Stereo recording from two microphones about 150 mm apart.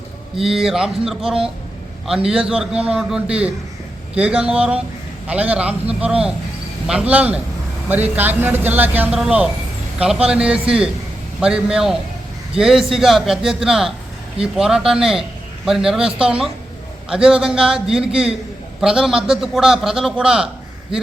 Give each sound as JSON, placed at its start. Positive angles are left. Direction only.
{"t": 0.4, "sound": "a man's voice", "side_deg": -5}